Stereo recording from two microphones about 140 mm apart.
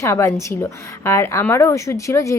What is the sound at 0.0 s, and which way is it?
Speech, 20° left (ahead or behind).